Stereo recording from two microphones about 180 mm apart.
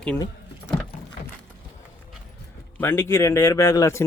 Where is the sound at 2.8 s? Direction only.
15° left (ahead or behind).